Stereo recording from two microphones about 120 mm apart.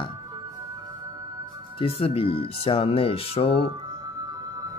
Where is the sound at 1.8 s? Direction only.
55° left (ahead or behind).